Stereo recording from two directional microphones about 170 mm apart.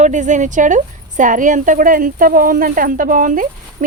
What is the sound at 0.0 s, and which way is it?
Speech, 45° right (ahead or behind).